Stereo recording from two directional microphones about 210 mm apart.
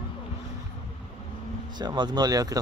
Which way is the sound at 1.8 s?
20° right (ahead or behind).